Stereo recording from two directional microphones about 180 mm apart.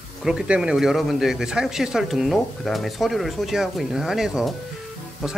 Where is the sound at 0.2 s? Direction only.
5° right (ahead or behind).